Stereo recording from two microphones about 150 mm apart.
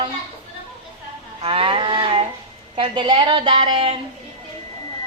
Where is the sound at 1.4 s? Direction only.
40° right (ahead or behind).